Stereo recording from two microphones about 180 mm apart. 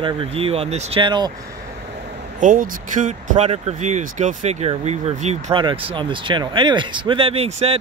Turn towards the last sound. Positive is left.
turn(degrees=-35)  # may be behind; listen again after turning